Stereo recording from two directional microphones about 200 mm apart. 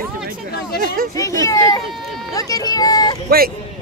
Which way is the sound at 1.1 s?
15° left (ahead or behind).